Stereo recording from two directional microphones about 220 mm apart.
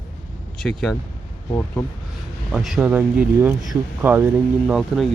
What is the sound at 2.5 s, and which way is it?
Speech, centre (ahead or behind).